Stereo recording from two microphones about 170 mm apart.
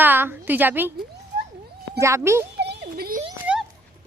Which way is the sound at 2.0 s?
15° right (ahead or behind).